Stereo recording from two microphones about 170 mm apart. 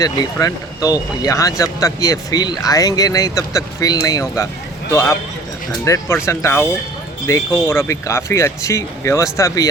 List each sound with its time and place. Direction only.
0.0 s speech: 20° left (ahead or behind)